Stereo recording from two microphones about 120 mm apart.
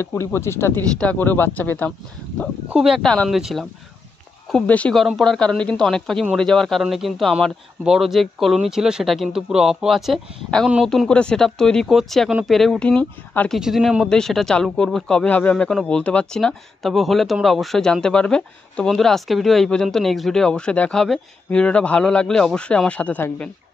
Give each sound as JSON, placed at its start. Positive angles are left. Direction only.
{"t": 0.0, "sound": "speech", "side_deg": 20}
{"t": 2.7, "sound": "speech", "side_deg": -5}
{"t": 4.5, "sound": "speech", "side_deg": 10}
{"t": 13.6, "sound": "speech", "side_deg": -5}